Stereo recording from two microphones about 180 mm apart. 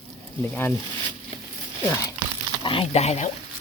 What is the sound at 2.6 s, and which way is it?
Speech, 30° left (ahead or behind).